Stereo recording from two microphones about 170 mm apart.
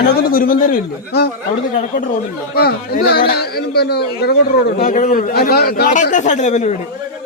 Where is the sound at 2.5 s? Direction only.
65° left (ahead or behind).